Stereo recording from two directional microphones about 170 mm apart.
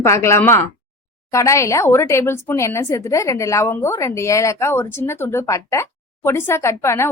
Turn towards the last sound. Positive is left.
turn(degrees=15)  # may be behind; listen again after turning